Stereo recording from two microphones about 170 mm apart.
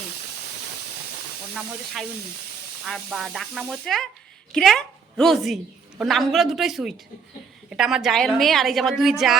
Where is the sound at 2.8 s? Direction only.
Centre (ahead or behind).